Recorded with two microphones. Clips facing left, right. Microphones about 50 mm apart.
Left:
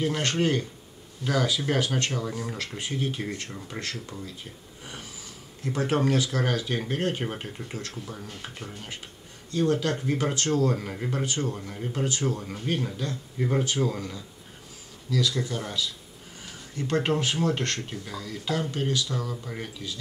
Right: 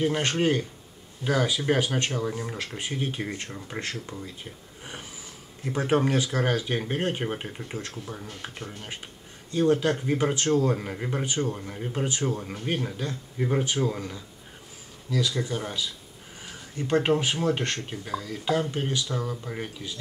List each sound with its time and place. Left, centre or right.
0.2 s speech: centre
5.6 s speech: centre
9.5 s speech: centre
13.4 s speech: centre
16.4 s a sound: centre
16.9 s speech: centre